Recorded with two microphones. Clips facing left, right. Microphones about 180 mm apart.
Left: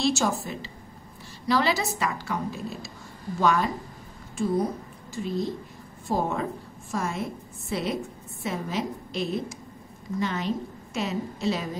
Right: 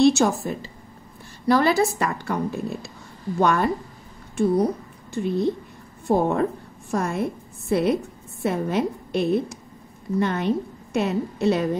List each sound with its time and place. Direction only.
0.0 s a woman's voice: 60° right (ahead or behind)
5.1 s a woman's voice: 60° right (ahead or behind)